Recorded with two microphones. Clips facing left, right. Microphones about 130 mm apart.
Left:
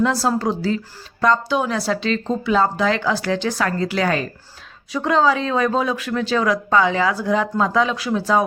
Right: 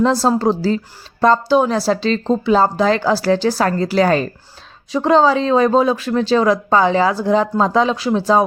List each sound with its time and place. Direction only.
0.0 s speech: 30° right (ahead or behind)